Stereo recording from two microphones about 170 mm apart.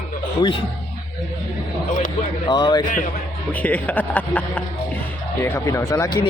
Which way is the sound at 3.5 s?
10° left (ahead or behind).